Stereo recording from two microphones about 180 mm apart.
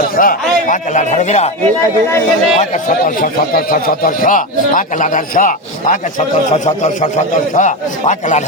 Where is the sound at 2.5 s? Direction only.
45° left (ahead or behind).